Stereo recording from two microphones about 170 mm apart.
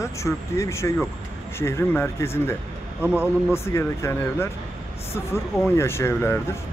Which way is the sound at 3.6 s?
15° left (ahead or behind).